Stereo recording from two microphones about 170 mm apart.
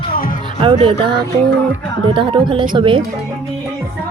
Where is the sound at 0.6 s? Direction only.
30° right (ahead or behind).